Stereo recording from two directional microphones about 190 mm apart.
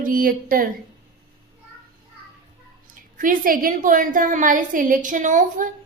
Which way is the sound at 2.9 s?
45° right (ahead or behind).